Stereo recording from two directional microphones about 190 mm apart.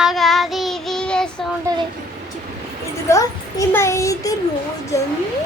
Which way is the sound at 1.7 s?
15° right (ahead or behind).